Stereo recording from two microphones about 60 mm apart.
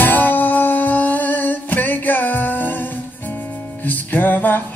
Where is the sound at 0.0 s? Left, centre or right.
Left.